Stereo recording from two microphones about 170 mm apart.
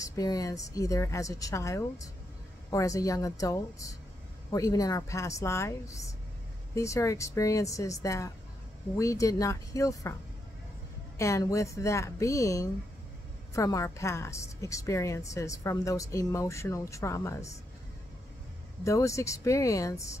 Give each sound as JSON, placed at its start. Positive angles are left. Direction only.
{"t": 0.0, "sound": "a woman's voice", "side_deg": 20}
{"t": 11.1, "sound": "a woman's voice", "side_deg": 15}
{"t": 18.9, "sound": "a woman's voice", "side_deg": 20}